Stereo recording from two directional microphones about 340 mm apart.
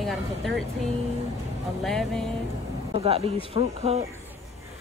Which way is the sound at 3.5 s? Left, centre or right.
Centre.